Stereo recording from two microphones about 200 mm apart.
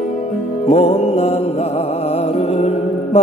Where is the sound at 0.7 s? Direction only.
35° left (ahead or behind).